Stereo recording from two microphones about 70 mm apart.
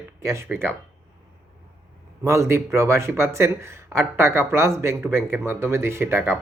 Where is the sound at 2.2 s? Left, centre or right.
Right.